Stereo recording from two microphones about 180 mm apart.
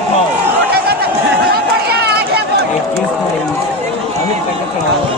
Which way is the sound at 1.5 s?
60° right (ahead or behind).